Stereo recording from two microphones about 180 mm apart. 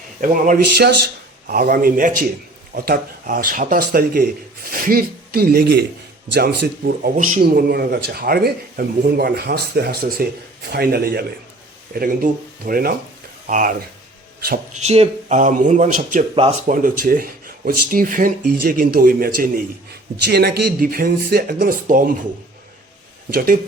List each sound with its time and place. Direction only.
0.2 s speech: 50° right (ahead or behind)
16.3 s speech: 30° right (ahead or behind)
16.6 s speech: 50° right (ahead or behind)
20.2 s speech: 65° right (ahead or behind)
23.3 s speech: 55° right (ahead or behind)